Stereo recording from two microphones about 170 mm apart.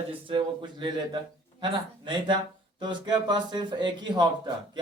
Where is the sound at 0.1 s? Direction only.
30° right (ahead or behind).